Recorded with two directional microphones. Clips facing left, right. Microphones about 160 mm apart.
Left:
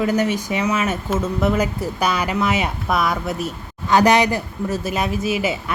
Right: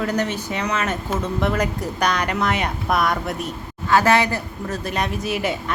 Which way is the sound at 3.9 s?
15° left (ahead or behind).